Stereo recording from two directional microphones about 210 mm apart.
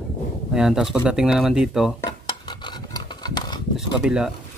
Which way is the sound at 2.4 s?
20° left (ahead or behind).